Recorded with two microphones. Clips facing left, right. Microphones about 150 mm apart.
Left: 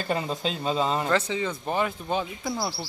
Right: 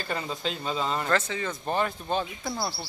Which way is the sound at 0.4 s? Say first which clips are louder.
Left 4 dB; 15° left (ahead or behind).